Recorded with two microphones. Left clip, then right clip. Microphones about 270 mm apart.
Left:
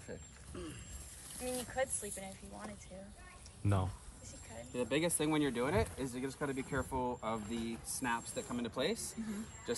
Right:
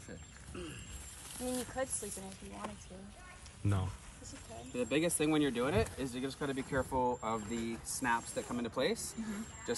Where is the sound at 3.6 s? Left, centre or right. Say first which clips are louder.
Left 2 dB; centre.